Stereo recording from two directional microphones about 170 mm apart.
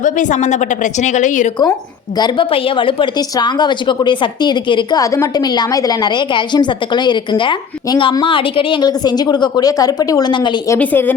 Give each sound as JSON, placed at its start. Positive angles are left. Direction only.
{"t": 0.0, "sound": "a woman's voice", "side_deg": 45}
{"t": 2.1, "sound": "a woman's voice", "side_deg": 30}
{"t": 10.8, "sound": "a woman's voice", "side_deg": 10}